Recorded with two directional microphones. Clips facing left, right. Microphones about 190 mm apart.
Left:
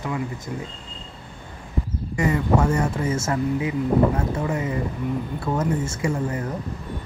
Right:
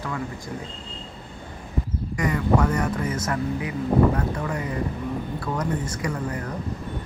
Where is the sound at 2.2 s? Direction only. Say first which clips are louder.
Left 1 dB; 25° left (ahead or behind).